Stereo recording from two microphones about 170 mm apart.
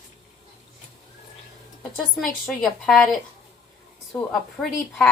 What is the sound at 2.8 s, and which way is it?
Speech, centre (ahead or behind).